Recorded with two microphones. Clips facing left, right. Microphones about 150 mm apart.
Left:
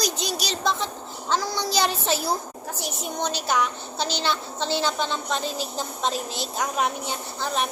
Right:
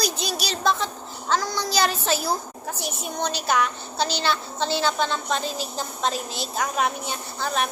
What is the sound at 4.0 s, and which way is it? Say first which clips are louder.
A child's voice: right 2 dB; 20° left (ahead or behind).